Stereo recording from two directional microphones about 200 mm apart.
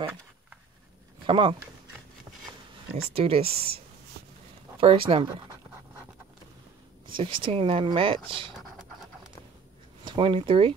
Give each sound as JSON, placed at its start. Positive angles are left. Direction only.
{"t": 0.1, "sound": "a sound", "side_deg": 0}
{"t": 1.2, "sound": "speech", "side_deg": -25}
{"t": 2.9, "sound": "speech", "side_deg": -30}
{"t": 3.4, "sound": "speech", "side_deg": -50}
{"t": 4.7, "sound": "speech", "side_deg": -30}
{"t": 7.2, "sound": "speech", "side_deg": -25}
{"t": 10.0, "sound": "speech", "side_deg": -25}